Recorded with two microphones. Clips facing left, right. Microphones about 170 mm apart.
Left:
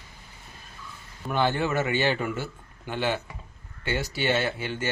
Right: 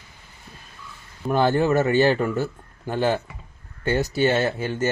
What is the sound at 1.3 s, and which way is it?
A man's voice, 40° right (ahead or behind).